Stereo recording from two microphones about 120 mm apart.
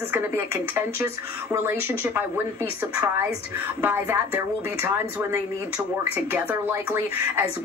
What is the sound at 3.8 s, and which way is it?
A woman's voice, 20° right (ahead or behind).